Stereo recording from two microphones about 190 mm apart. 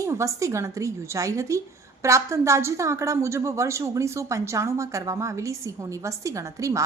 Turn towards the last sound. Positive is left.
turn(degrees=-15)  # may be behind; listen again after turning